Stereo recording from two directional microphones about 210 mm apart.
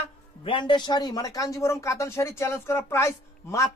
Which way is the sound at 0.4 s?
25° left (ahead or behind).